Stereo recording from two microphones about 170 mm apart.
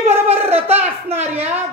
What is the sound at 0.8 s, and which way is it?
Speech, 35° right (ahead or behind).